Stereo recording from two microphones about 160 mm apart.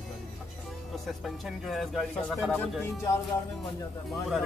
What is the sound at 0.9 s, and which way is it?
Speech, centre (ahead or behind).